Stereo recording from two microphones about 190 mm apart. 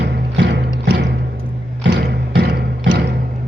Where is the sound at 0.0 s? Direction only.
70° right (ahead or behind).